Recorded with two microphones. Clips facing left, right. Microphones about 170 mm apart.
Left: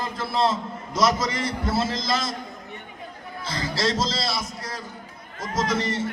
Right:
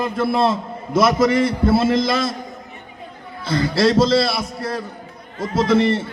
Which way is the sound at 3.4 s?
60° right (ahead or behind).